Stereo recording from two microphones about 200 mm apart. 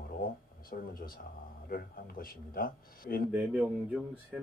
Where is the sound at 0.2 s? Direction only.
45° left (ahead or behind).